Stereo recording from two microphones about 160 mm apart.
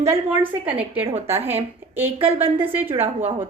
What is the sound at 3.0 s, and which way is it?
Speech, 40° right (ahead or behind).